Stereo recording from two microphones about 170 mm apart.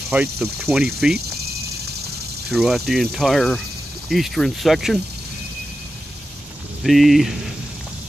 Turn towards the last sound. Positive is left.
turn(degrees=0)  # may be behind; listen again after turning